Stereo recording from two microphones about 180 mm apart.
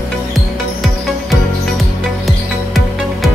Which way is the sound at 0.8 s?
Centre (ahead or behind).